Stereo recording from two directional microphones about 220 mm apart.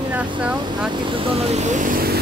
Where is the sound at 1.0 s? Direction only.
30° right (ahead or behind).